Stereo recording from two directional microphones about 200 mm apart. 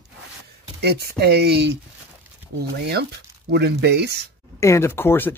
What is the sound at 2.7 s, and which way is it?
Speech, 55° right (ahead or behind).